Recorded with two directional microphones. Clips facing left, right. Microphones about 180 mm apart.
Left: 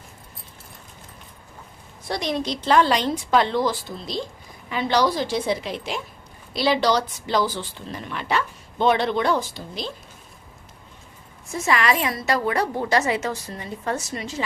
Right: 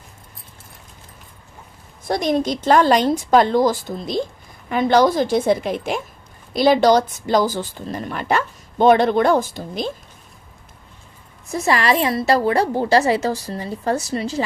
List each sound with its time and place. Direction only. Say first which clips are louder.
2.0 s speech: right 6 dB; 50° right (ahead or behind)
11.5 s a woman's voice: right 4 dB; 35° right (ahead or behind)